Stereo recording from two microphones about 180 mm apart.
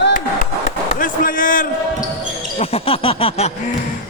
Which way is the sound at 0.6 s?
45° left (ahead or behind).